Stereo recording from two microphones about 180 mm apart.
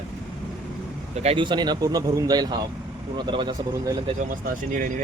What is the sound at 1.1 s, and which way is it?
Speech, 35° right (ahead or behind).